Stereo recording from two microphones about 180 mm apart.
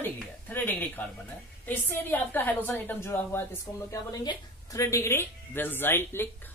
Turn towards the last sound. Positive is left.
turn(degrees=10)  # may be behind; listen again after turning